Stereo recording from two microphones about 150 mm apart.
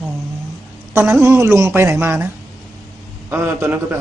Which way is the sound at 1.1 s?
15° right (ahead or behind).